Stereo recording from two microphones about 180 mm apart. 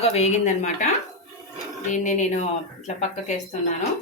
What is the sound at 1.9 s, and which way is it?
Speech, 45° left (ahead or behind).